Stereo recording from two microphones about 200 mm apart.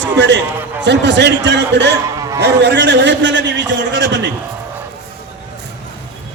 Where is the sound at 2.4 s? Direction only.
60° right (ahead or behind).